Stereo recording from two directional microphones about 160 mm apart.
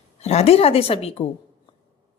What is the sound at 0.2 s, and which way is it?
A woman's voice, 40° left (ahead or behind).